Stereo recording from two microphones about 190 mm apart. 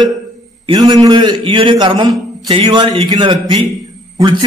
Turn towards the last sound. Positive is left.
turn(degrees=-25)  # may be behind; listen again after turning